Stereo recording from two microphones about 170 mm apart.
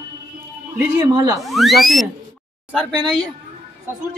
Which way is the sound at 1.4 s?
Centre (ahead or behind).